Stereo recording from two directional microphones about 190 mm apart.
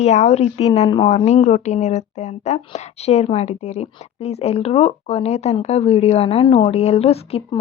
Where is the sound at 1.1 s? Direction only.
35° left (ahead or behind).